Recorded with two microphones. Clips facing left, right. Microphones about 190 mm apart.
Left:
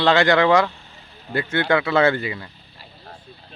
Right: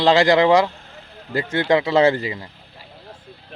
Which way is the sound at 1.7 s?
35° right (ahead or behind).